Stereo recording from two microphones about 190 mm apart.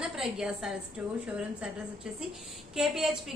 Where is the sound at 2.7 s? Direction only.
Centre (ahead or behind).